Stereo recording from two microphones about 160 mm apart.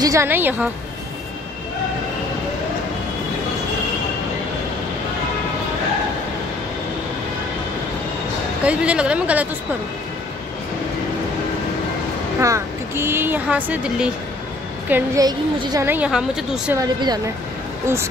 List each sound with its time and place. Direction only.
0.0 s speech: 20° right (ahead or behind)
8.6 s speech: 5° right (ahead or behind)
12.4 s speech: 20° right (ahead or behind)
15.2 s a woman's voice: 25° right (ahead or behind)
15.9 s speech: 5° right (ahead or behind)
16.7 s a woman's voice: 25° right (ahead or behind)